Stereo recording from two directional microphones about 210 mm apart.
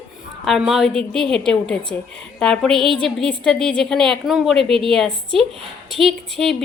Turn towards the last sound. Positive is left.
turn(degrees=0)  # may be behind; listen again after turning